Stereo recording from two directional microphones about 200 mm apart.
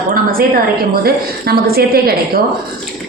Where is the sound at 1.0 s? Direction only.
50° right (ahead or behind).